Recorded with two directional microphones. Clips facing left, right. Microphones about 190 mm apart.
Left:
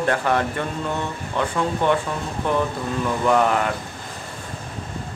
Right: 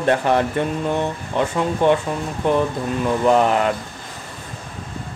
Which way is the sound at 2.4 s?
20° right (ahead or behind).